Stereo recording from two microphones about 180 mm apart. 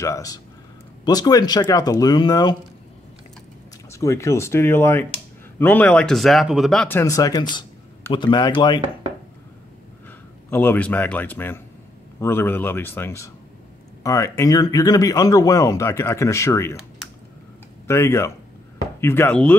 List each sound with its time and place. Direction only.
0.0 s speech: 20° left (ahead or behind)
3.9 s speech: 15° left (ahead or behind)
7.0 s speech: 20° left (ahead or behind)
10.0 s a man's voice: 10° left (ahead or behind)
17.8 s speech: 15° left (ahead or behind)